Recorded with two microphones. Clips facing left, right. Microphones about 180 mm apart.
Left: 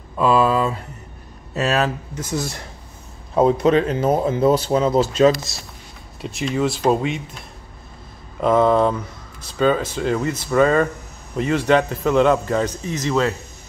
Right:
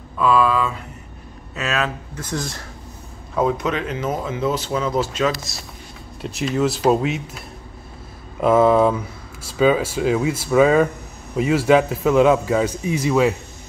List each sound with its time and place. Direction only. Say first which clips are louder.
0.2 s speech: left 1 dB; 35° left (ahead or behind)
2.1 s speech: left 2 dB; 10° left (ahead or behind)
3.3 s speech: left 6 dB; 30° left (ahead or behind)
6.2 s a man's voice: right 1 dB; centre (ahead or behind)